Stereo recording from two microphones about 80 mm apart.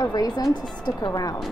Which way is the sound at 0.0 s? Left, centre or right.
Left.